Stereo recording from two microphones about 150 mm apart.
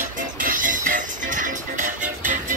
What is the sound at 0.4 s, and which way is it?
Music, 65° right (ahead or behind).